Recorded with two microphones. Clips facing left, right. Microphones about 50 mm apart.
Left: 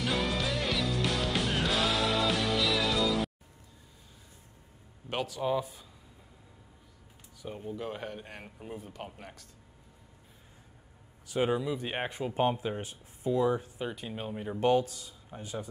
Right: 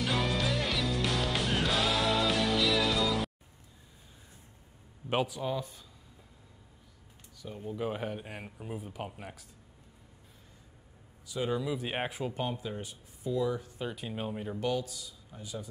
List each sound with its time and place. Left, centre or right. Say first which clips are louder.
0.0 s music: even; centre
5.1 s speech: right 4 dB; centre
5.4 s speech: left 4 dB; centre
7.7 s speech: right 5 dB; centre
11.2 s speech: left 5 dB; left
11.6 s speech: even; centre
12.4 s speech: left 6 dB; left
13.7 s speech: even; centre
14.6 s speech: left 8 dB; left